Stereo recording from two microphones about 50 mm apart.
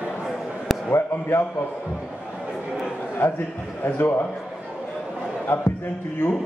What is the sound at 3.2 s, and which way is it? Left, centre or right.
A man's voice, left.